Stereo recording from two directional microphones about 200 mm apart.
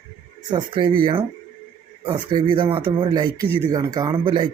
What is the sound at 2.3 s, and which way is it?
Speech, 25° right (ahead or behind).